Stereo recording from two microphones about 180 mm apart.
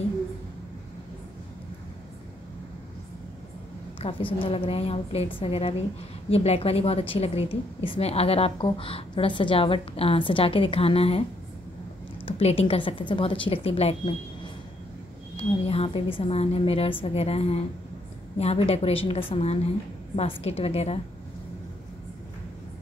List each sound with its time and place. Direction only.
4.0 s a woman's voice: 30° left (ahead or behind)
12.3 s a woman's voice: 35° left (ahead or behind)